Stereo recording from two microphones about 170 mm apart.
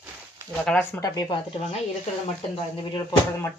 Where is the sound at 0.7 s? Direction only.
5° left (ahead or behind).